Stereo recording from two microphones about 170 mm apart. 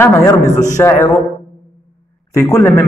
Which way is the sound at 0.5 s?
45° left (ahead or behind).